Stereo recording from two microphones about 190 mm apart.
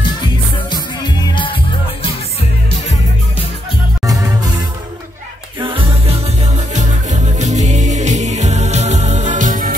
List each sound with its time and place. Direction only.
0.2 s music: 20° left (ahead or behind)
4.0 s music: 20° right (ahead or behind)
5.6 s music: 25° right (ahead or behind); by 9.8 s 45° right (ahead or behind)